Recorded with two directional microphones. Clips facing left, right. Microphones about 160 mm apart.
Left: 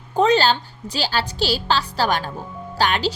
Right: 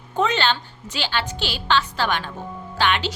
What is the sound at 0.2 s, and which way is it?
A woman's voice, 35° left (ahead or behind).